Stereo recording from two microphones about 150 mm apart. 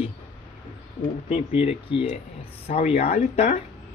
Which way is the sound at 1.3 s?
40° left (ahead or behind).